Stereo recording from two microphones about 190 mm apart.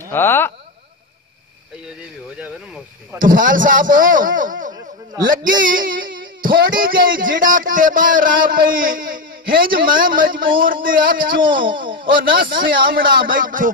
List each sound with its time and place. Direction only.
0.1 s speech: 10° left (ahead or behind)
2.3 s speech: 5° right (ahead or behind)
3.2 s speech: 45° right (ahead or behind)
11.6 s speech: 25° right (ahead or behind)
12.1 s speech: 50° right (ahead or behind)